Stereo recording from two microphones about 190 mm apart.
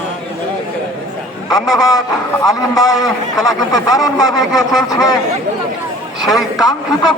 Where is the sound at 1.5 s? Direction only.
20° left (ahead or behind).